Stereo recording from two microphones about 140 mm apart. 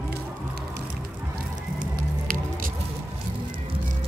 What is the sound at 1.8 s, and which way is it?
Music, 80° right.